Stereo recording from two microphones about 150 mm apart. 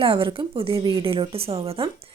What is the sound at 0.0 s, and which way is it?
Speech, 35° right (ahead or behind).